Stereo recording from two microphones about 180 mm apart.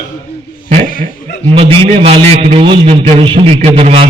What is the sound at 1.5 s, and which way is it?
A man's voice, 30° right (ahead or behind).